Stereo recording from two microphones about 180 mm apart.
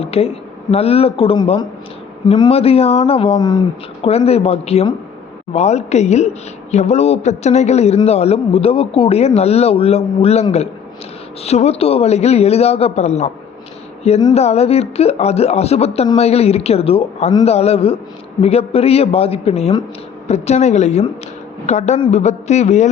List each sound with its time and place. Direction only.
0.0 s speech: 35° left (ahead or behind)
4.0 s speech: 35° left (ahead or behind)
14.3 s speech: 35° left (ahead or behind)